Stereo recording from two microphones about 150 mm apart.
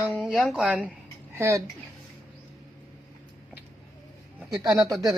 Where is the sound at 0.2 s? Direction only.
5° left (ahead or behind).